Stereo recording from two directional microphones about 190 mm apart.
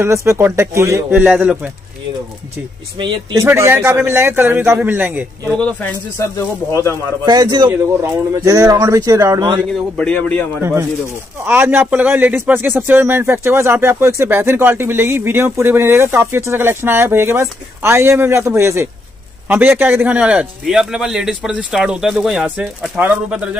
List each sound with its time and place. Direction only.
0.0 s a man's voice: 15° right (ahead or behind)
3.0 s speech: 25° right (ahead or behind)
3.4 s a man's voice: 10° right (ahead or behind)
5.6 s speech: 5° left (ahead or behind)
7.2 s speech: 20° right (ahead or behind)
9.7 s speech: 5° left (ahead or behind)
10.6 s a man's voice: 15° right (ahead or behind)